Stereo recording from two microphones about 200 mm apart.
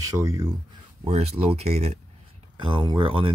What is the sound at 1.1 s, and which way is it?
Speech, 30° right (ahead or behind).